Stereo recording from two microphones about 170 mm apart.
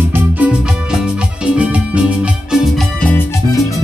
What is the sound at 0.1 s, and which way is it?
Music, 5° right (ahead or behind).